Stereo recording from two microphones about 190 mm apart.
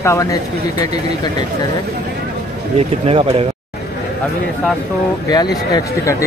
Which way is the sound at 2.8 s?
30° right (ahead or behind).